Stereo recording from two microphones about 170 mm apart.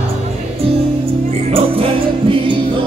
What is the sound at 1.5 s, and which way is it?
Music, 35° right (ahead or behind).